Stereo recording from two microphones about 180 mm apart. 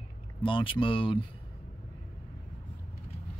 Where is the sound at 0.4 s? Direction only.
30° left (ahead or behind).